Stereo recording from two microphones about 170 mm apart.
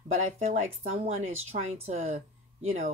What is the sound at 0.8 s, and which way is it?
Speech, 40° right (ahead or behind).